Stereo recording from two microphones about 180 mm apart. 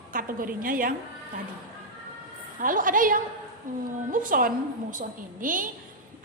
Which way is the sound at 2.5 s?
50° right (ahead or behind).